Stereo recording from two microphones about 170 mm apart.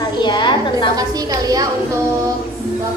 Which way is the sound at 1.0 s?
20° right (ahead or behind).